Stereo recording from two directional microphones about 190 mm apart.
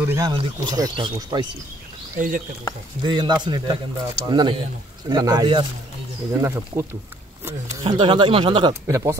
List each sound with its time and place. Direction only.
0.0 s speech: 15° right (ahead or behind)
2.1 s speech: 45° right (ahead or behind)
3.0 s speech: 25° right (ahead or behind)